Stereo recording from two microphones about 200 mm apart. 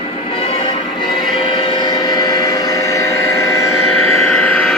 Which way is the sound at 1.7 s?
20° left (ahead or behind).